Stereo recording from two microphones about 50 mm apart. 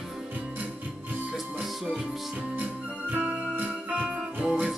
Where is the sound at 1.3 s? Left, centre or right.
Centre.